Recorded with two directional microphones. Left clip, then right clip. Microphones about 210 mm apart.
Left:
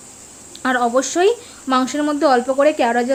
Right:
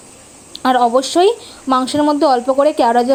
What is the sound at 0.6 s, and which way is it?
Speech, 15° right (ahead or behind).